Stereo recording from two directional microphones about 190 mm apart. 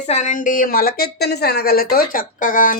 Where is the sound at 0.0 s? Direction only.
40° left (ahead or behind).